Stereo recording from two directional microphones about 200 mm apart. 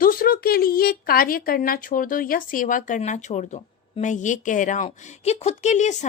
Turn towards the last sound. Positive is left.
turn(degrees=35)  # may be behind; listen again after turning